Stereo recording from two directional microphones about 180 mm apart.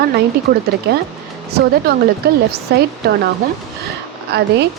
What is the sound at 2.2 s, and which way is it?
Speech, 60° right (ahead or behind).